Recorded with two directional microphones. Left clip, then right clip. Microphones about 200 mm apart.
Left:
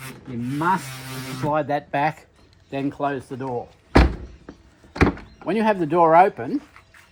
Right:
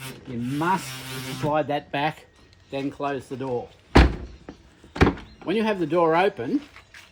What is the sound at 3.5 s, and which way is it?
Door, centre (ahead or behind).